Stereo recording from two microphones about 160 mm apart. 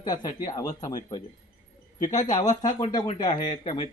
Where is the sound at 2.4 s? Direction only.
50° left (ahead or behind).